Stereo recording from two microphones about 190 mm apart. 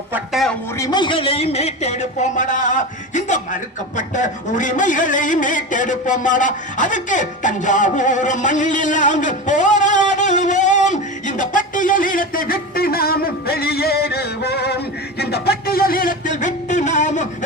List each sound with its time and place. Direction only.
0.1 s music: centre (ahead or behind)
0.8 s speech: 20° left (ahead or behind); by 14.8 s 60° left (ahead or behind)
15.2 s music: 55° left (ahead or behind); by 17.2 s 40° left (ahead or behind)